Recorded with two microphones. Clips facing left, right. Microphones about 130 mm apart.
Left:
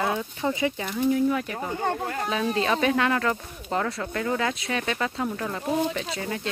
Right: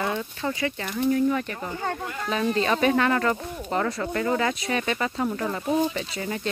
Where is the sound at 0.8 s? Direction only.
5° left (ahead or behind).